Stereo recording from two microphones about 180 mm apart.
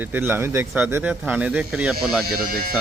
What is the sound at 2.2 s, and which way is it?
Speech, 55° right (ahead or behind).